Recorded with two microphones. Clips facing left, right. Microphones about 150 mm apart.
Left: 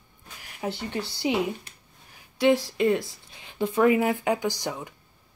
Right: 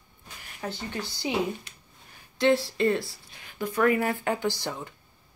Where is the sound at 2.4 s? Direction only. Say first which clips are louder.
Left 1 dB; 15° left (ahead or behind).